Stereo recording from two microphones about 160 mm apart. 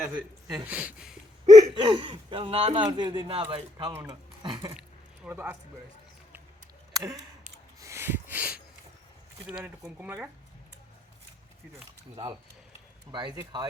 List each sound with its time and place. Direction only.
0.0 s speech: 20° right (ahead or behind)
0.6 s speech: 10° right (ahead or behind)
1.5 s speech: 25° right (ahead or behind)
4.8 s keys jangling: 10° right (ahead or behind)
6.9 s speech: 20° right (ahead or behind)
7.8 s a sound: 15° right (ahead or behind)
9.5 s speech: 5° right (ahead or behind)
13.1 s speech: 30° right (ahead or behind)